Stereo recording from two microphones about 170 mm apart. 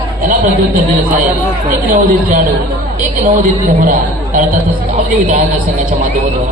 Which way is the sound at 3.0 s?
50° right (ahead or behind).